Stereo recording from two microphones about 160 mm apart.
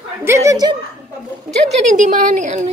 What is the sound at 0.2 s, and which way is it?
Speech, 20° right (ahead or behind).